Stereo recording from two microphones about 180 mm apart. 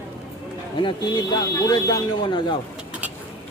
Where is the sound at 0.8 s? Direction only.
25° left (ahead or behind).